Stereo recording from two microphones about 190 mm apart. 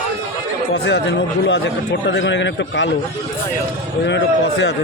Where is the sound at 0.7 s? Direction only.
65° left (ahead or behind).